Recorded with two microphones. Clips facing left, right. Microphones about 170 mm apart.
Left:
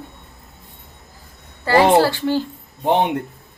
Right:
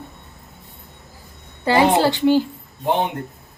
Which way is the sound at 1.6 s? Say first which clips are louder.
Left 2 dB; 20° right (ahead or behind).